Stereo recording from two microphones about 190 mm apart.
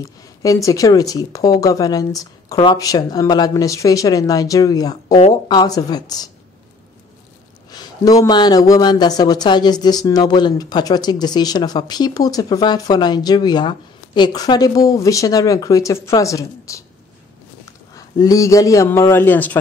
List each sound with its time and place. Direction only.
0.0 s speech: 15° left (ahead or behind)
5.0 s speech: 35° left (ahead or behind)
5.3 s speech: 20° left (ahead or behind)
7.7 s a man's voice: 20° left (ahead or behind)